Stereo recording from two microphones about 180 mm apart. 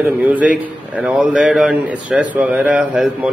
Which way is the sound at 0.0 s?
10° right (ahead or behind).